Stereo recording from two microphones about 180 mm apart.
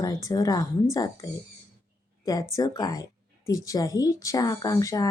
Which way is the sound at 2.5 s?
20° left (ahead or behind).